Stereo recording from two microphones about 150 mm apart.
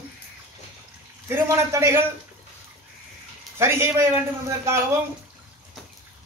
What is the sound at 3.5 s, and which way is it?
A man's voice, 15° right (ahead or behind).